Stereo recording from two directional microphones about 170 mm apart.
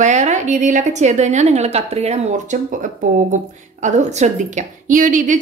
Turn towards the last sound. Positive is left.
turn(degrees=-50)  # may be behind; listen again after turning